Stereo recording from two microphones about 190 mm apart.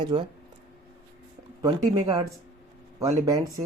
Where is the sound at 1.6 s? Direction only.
20° right (ahead or behind).